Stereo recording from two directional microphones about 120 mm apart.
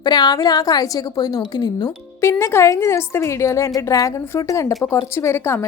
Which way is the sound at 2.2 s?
20° left (ahead or behind).